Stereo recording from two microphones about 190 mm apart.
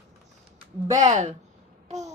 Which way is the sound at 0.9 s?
40° right (ahead or behind).